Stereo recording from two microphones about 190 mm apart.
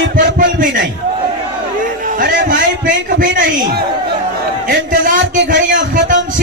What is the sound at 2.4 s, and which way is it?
A man's voice, 45° right (ahead or behind).